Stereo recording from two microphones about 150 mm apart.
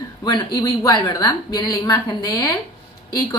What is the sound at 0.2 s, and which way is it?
A woman's voice, 25° left (ahead or behind).